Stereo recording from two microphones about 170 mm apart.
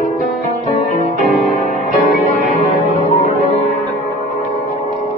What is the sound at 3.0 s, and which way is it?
Music, 40° left (ahead or behind).